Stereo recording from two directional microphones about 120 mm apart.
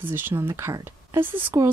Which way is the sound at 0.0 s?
15° right (ahead or behind).